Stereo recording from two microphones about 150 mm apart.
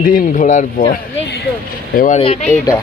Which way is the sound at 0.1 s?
55° left (ahead or behind).